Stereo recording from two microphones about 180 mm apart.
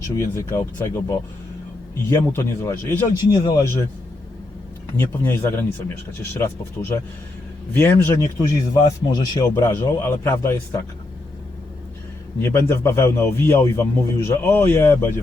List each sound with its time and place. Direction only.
0.2 s a man's voice: 15° left (ahead or behind)
4.9 s a man's voice: 15° left (ahead or behind)
12.4 s a man's voice: 15° left (ahead or behind)